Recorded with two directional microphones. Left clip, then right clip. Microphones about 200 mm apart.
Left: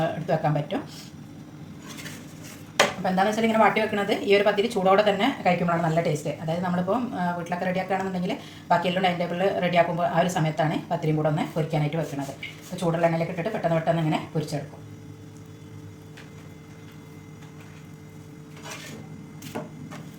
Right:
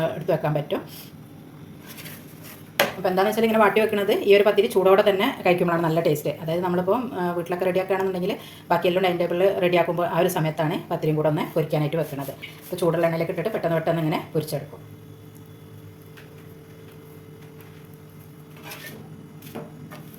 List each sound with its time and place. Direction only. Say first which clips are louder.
0.0 s speech: right 1 dB; 35° right (ahead or behind)
3.0 s speech: right 2 dB; 45° right (ahead or behind)